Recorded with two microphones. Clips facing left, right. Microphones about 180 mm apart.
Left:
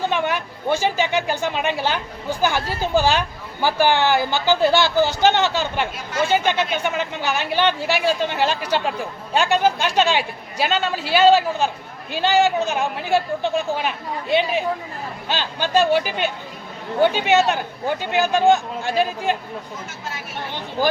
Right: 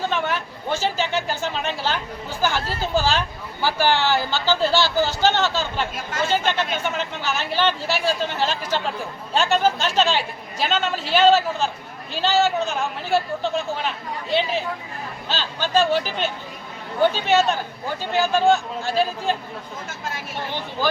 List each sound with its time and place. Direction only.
0.1 s a woman's voice: 15° left (ahead or behind)